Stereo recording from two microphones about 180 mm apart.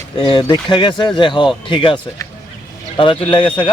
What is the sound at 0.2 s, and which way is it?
Speech, 25° left (ahead or behind).